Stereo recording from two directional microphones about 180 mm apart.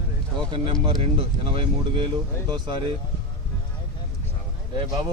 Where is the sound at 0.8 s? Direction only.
30° right (ahead or behind).